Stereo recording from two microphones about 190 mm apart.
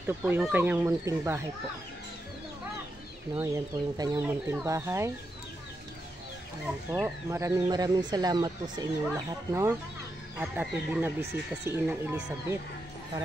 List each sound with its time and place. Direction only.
0.0 s speech: 10° right (ahead or behind)
3.3 s speech: 15° right (ahead or behind)
6.9 s speech: 15° right (ahead or behind)